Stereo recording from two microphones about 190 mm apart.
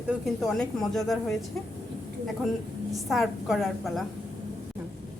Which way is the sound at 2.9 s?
Centre (ahead or behind).